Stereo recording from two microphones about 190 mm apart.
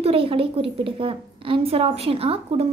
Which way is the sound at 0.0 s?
30° right (ahead or behind).